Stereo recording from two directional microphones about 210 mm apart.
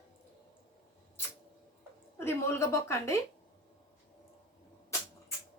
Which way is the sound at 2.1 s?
10° left (ahead or behind).